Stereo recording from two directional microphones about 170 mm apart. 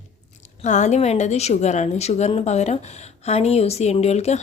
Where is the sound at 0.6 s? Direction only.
45° left (ahead or behind).